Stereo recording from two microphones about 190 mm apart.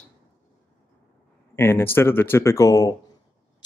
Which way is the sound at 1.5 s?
10° left (ahead or behind).